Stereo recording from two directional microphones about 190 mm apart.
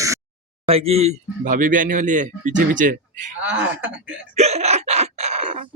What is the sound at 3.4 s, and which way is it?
Speech, 10° right (ahead or behind).